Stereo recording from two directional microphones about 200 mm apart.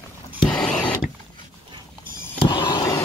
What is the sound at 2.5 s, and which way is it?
Vehicle, 20° left (ahead or behind).